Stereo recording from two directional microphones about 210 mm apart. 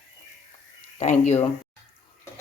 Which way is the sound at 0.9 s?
30° left (ahead or behind).